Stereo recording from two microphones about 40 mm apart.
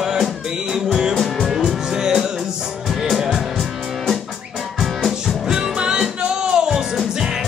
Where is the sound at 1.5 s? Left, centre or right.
Centre.